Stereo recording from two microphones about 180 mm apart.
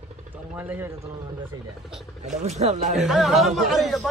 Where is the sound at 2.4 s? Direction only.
40° right (ahead or behind).